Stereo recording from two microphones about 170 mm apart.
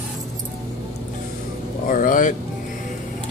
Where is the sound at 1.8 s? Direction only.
55° left (ahead or behind).